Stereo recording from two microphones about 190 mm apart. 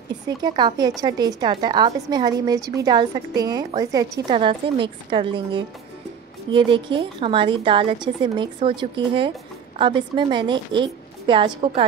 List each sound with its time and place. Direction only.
0.4 s a woman's voice: 25° right (ahead or behind)